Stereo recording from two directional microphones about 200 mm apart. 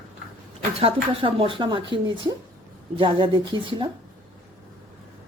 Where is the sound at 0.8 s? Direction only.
30° right (ahead or behind).